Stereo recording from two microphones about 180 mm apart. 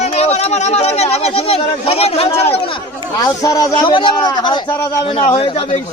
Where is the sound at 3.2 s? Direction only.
20° left (ahead or behind).